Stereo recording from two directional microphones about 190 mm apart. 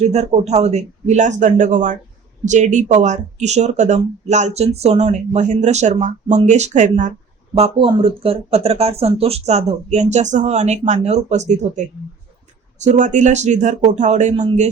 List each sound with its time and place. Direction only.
0.0 s speech: 35° right (ahead or behind)
7.5 s speech: 30° right (ahead or behind)
12.8 s speech: 40° right (ahead or behind)